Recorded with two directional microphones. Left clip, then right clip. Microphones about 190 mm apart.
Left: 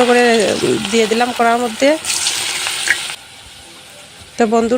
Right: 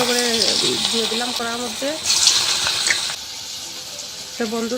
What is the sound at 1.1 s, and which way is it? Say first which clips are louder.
Speech: left 10 dB; 50° left (ahead or behind).